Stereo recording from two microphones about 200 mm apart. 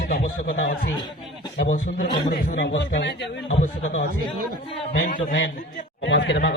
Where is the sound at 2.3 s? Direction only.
55° left (ahead or behind).